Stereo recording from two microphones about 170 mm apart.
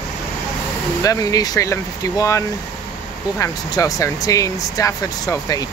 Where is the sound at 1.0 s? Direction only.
20° left (ahead or behind).